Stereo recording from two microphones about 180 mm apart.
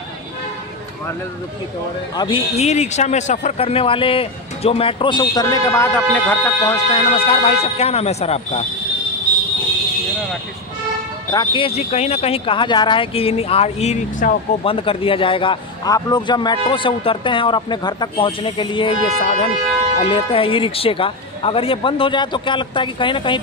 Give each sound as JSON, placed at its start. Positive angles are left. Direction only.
{"t": 2.1, "sound": "speech", "side_deg": 30}
{"t": 6.9, "sound": "speech", "side_deg": 30}
{"t": 11.3, "sound": "speech", "side_deg": 30}
{"t": 19.1, "sound": "speech", "side_deg": 40}
{"t": 20.0, "sound": "speech", "side_deg": 30}